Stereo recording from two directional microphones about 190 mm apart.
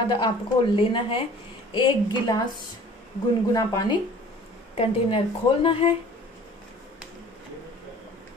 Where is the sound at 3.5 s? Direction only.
20° left (ahead or behind).